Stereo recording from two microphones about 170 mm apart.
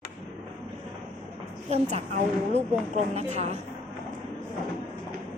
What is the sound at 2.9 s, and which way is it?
Speech, 40° right (ahead or behind).